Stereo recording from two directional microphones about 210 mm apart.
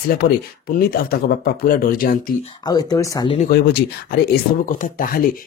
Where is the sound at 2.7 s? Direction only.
20° left (ahead or behind).